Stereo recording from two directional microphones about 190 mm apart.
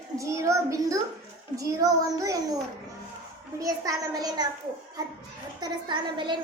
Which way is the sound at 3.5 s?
20° right (ahead or behind).